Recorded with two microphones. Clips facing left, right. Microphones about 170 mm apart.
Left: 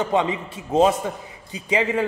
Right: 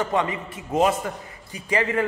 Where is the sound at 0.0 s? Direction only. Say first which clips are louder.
Left 2 dB; 15° left (ahead or behind).